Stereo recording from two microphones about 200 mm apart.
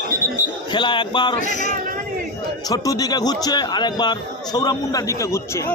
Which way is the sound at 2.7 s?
20° left (ahead or behind).